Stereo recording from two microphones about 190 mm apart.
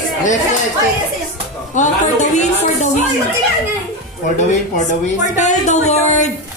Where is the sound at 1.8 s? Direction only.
40° left (ahead or behind).